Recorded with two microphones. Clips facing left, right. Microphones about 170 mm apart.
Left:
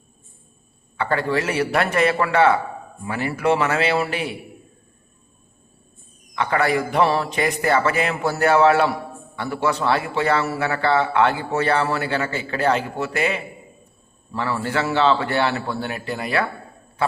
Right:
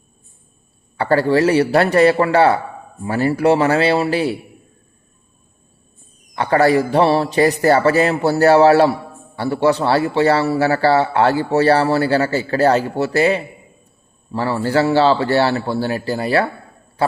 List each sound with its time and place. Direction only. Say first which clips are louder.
0.9 s a man's voice: right 7 dB; 35° right (ahead or behind)
6.3 s a man's voice: right 6 dB; 35° right (ahead or behind)
17.0 s a sound: right 4 dB; 35° right (ahead or behind)